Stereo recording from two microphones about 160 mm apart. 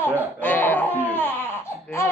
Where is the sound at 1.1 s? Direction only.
10° left (ahead or behind).